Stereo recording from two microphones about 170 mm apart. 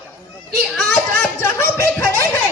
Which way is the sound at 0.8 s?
5° left (ahead or behind).